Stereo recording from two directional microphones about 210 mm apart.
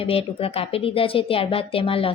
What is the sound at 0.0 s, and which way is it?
A woman's voice, 25° left (ahead or behind).